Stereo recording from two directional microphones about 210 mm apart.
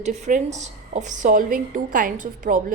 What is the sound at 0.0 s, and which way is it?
A woman's voice, 35° right (ahead or behind).